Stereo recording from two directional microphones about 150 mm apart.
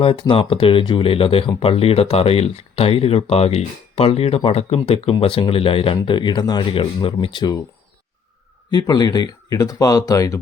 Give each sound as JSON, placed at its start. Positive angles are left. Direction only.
{"t": 0.0, "sound": "speech", "side_deg": 35}
{"t": 8.7, "sound": "speech", "side_deg": 25}